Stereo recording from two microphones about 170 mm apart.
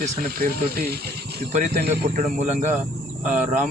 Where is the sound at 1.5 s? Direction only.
45° right (ahead or behind).